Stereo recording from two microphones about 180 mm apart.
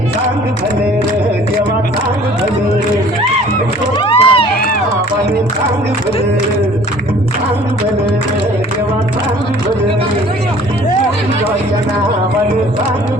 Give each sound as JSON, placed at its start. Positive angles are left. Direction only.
{"t": 4.0, "sound": "run", "side_deg": 30}